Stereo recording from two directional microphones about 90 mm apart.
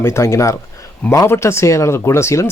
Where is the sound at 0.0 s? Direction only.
30° left (ahead or behind).